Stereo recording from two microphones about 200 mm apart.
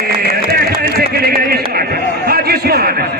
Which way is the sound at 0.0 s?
45° right (ahead or behind).